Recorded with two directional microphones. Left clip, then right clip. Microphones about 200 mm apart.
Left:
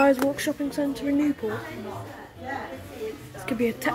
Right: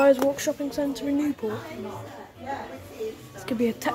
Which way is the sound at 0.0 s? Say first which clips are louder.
Right 1 dB; 15° right (ahead or behind).